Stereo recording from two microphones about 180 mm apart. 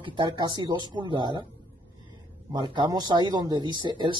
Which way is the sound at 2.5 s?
20° right (ahead or behind).